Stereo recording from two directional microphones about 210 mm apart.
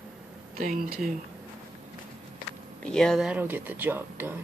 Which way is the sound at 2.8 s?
5° left (ahead or behind).